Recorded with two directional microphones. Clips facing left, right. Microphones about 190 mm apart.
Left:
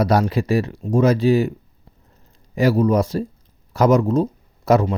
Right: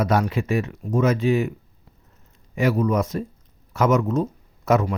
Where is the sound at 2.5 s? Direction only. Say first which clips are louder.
Left 4 dB; 35° left (ahead or behind).